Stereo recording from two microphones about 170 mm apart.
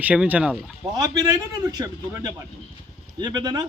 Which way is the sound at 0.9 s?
20° right (ahead or behind).